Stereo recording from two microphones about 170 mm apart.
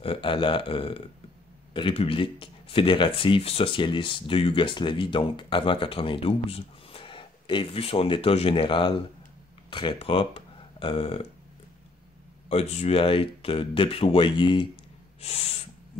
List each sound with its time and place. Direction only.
0.0 s speech: 30° left (ahead or behind)
12.4 s speech: 40° left (ahead or behind)